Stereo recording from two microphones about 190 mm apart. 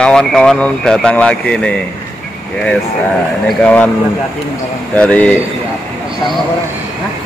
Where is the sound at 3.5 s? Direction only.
5° left (ahead or behind).